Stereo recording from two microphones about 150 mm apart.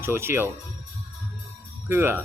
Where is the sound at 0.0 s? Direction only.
15° right (ahead or behind).